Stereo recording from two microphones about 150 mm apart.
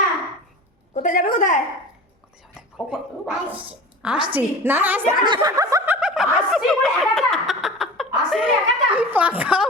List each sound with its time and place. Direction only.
0.9 s a sound: 60° left (ahead or behind)
2.9 s a woman's voice: 5° right (ahead or behind)
5.2 s snicker: 25° right (ahead or behind); by 8.0 s centre (ahead or behind)
8.3 s a woman's voice: 5° right (ahead or behind)